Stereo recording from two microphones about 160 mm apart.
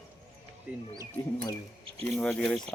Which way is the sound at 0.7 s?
10° right (ahead or behind).